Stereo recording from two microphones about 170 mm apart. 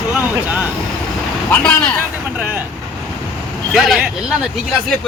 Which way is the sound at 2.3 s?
10° right (ahead or behind).